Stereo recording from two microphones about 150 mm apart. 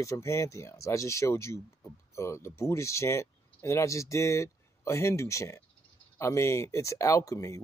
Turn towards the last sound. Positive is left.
turn(degrees=20)  # may be behind; listen again after turning